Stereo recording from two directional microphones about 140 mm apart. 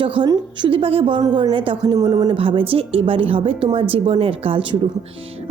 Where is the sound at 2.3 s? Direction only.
40° right (ahead or behind).